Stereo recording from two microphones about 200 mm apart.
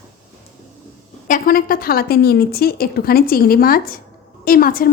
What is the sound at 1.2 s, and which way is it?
A woman's voice, 45° left (ahead or behind).